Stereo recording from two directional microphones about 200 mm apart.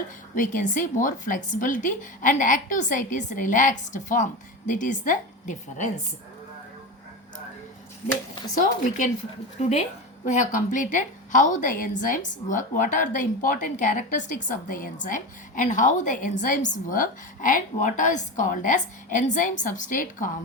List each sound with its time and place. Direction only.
0.3 s a woman's voice: 40° left (ahead or behind)
8.5 s a woman's voice: 40° left (ahead or behind)